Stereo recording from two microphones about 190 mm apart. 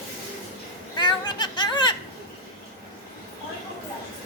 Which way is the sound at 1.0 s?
25° left (ahead or behind).